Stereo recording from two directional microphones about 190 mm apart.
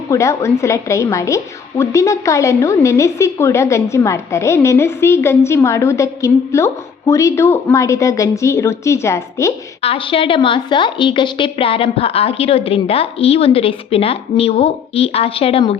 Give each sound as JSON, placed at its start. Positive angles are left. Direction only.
{"t": 0.1, "sound": "a woman's voice", "side_deg": 15}
{"t": 9.8, "sound": "a woman's voice", "side_deg": 30}